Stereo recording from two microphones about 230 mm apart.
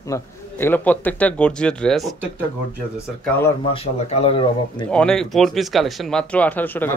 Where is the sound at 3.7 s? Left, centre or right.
Left.